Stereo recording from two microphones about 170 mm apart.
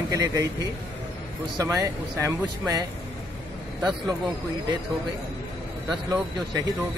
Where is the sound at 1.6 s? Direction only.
20° right (ahead or behind).